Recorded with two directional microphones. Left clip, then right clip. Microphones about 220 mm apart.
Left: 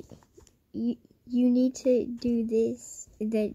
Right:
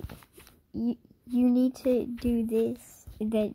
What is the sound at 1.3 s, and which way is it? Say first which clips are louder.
A woman's voice: even; 10° right (ahead or behind).